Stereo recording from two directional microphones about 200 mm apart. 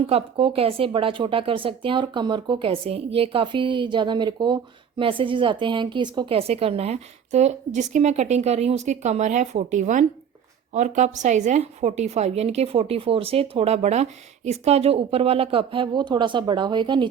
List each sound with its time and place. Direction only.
0.1 s a woman's voice: 30° right (ahead or behind)